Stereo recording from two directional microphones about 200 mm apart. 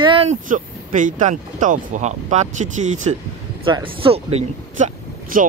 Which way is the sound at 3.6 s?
25° right (ahead or behind).